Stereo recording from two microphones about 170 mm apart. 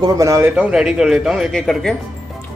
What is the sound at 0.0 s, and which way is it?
A man's voice, 20° right (ahead or behind).